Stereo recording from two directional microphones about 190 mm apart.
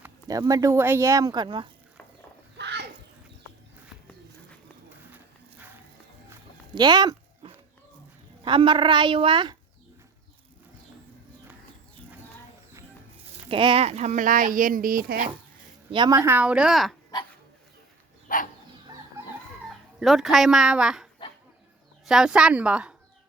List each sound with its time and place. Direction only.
0.0 s speech: 20° right (ahead or behind)
2.6 s a sound: 60° right (ahead or behind)
5.1 s a sound: 10° right (ahead or behind)
6.7 s a sound: 20° right (ahead or behind)
8.4 s speech: 25° right (ahead or behind)
13.3 s speech: 30° right (ahead or behind); by 15.3 s 50° right (ahead or behind)
15.9 s a woman's voice: 20° right (ahead or behind); by 16.9 s centre (ahead or behind)
17.1 s duck: 20° left (ahead or behind)
18.3 s dog: 45° left (ahead or behind)
19.6 s speech: centre (ahead or behind)